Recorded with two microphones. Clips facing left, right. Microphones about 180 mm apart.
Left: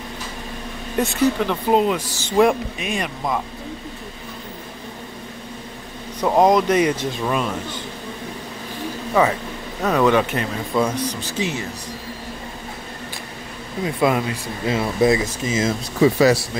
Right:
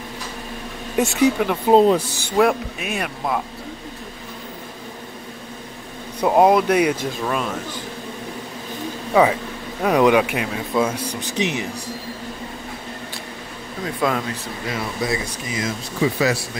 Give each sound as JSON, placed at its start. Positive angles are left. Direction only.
{"t": 1.2, "sound": "speech", "side_deg": -10}
{"t": 1.7, "sound": "speech", "side_deg": -30}
{"t": 2.2, "sound": "speech", "side_deg": -5}
{"t": 6.2, "sound": "speech", "side_deg": -10}
{"t": 9.1, "sound": "speech", "side_deg": -10}
{"t": 13.8, "sound": "speech", "side_deg": 10}
{"t": 14.7, "sound": "speech", "side_deg": 25}
{"t": 16.0, "sound": "a man's voice", "side_deg": 40}